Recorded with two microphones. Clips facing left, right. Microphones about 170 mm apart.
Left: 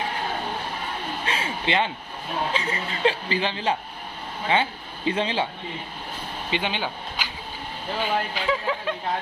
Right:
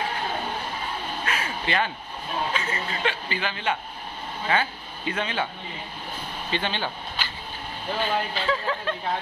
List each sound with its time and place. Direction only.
1.2 s a sound: 25° left (ahead or behind)
2.5 s speech: 30° left (ahead or behind)
6.5 s speech: 15° left (ahead or behind)